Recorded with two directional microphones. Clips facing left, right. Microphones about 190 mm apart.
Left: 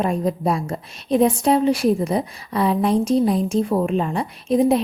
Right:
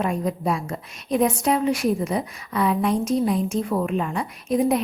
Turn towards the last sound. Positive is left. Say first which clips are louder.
# left 4 dB
turn(degrees=30)  # may be behind; listen again after turning